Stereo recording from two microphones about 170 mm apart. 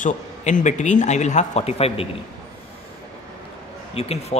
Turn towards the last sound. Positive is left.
turn(degrees=35)  # may be behind; listen again after turning